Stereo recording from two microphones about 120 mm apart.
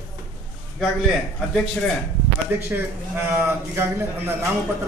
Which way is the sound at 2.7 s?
20° right (ahead or behind).